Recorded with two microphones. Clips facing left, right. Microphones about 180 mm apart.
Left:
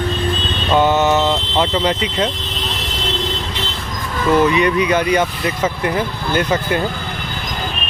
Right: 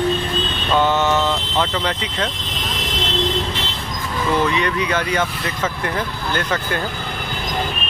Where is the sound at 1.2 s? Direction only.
25° left (ahead or behind).